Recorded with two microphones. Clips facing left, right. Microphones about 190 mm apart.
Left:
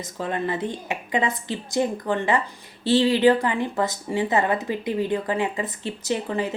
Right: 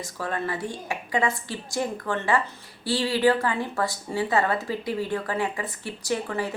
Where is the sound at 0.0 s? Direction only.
20° left (ahead or behind).